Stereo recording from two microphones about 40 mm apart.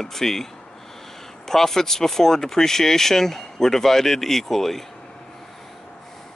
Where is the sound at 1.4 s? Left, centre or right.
Centre.